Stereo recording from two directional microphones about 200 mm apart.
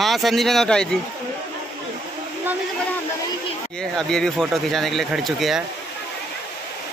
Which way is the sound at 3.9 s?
Centre (ahead or behind).